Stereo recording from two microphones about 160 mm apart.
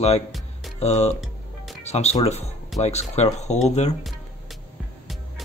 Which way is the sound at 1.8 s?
45° left (ahead or behind).